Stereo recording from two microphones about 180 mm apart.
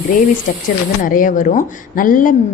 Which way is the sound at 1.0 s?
50° left (ahead or behind).